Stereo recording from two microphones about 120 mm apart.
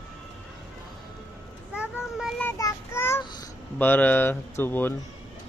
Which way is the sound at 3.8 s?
15° left (ahead or behind).